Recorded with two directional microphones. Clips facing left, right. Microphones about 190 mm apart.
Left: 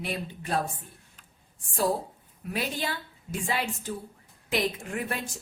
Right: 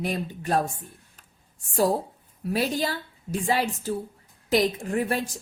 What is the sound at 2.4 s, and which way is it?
A woman's voice, 40° right (ahead or behind).